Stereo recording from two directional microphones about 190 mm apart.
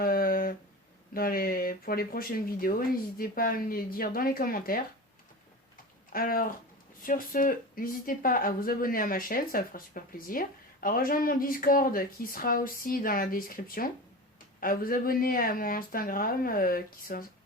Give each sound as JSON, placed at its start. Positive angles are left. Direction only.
{"t": 0.0, "sound": "a sound", "side_deg": 50}
{"t": 1.1, "sound": "speech", "side_deg": 50}
{"t": 6.1, "sound": "speech", "side_deg": 50}